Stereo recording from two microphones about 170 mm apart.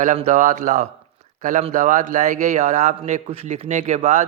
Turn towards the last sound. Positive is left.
turn(degrees=-40)  # may be behind; listen again after turning